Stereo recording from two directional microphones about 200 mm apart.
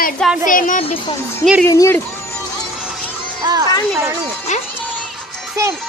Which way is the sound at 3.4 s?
20° right (ahead or behind).